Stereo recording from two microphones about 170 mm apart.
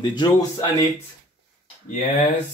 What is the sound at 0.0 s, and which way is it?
Speech, 25° left (ahead or behind).